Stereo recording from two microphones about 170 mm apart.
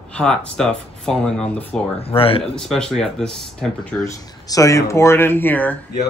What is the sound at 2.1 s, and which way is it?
Speech, 35° left (ahead or behind).